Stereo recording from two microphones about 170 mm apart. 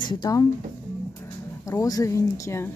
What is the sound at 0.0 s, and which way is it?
Speech, 25° left (ahead or behind).